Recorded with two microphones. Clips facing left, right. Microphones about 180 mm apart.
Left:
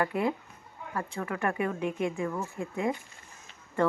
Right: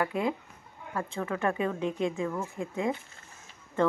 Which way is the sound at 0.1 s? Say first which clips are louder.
Left 1 dB; 20° right (ahead or behind).